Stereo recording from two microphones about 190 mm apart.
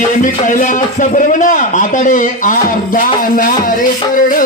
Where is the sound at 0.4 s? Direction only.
40° left (ahead or behind).